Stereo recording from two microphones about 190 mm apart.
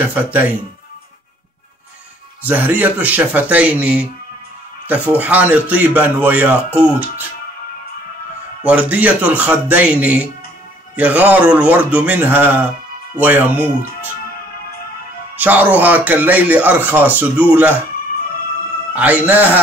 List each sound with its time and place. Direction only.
0.0 s speech: 10° right (ahead or behind)
2.4 s speech: 10° right (ahead or behind)
8.6 s speech: 5° right (ahead or behind)
15.3 s speech: 10° right (ahead or behind)
18.9 s speech: 10° right (ahead or behind)